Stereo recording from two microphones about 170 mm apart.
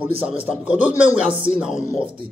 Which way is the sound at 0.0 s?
5° right (ahead or behind).